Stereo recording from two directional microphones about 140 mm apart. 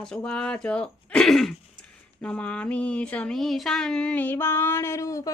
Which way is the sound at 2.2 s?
10° left (ahead or behind).